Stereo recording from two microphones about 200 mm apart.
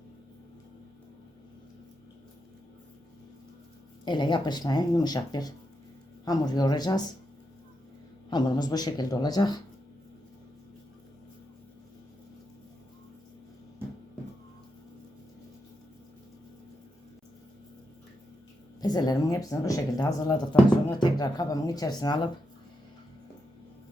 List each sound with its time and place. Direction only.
4.0 s speech: 20° left (ahead or behind)
8.3 s speech: 20° left (ahead or behind)
18.8 s speech: 20° left (ahead or behind)